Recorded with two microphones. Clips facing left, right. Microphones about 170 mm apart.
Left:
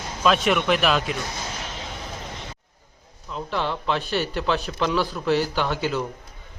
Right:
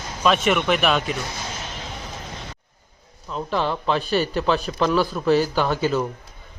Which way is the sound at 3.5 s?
15° right (ahead or behind).